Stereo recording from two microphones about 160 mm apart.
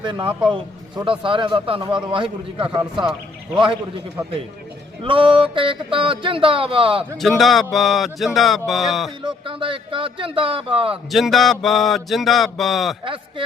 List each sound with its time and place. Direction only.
0.0 s music: 30° right (ahead or behind)
0.5 s speech: 30° right (ahead or behind)
1.2 s music: 30° right (ahead or behind)
3.1 s a man's voice: 5° right (ahead or behind)
5.0 s music: 30° right (ahead or behind)
7.2 s speech: centre (ahead or behind)
9.2 s music: 35° right (ahead or behind)
11.1 s speech: centre (ahead or behind)